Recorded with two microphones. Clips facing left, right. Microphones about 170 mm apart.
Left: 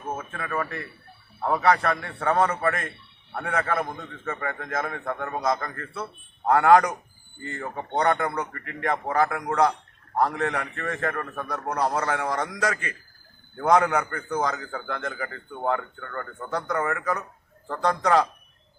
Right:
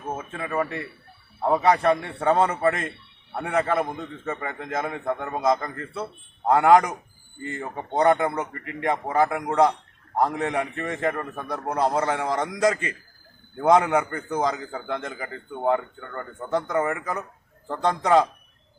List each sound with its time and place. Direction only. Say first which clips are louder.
0.3 s a man's voice: right 3 dB; 20° right (ahead or behind)